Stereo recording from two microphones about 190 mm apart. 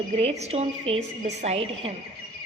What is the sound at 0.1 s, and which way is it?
A woman's voice, 35° right (ahead or behind).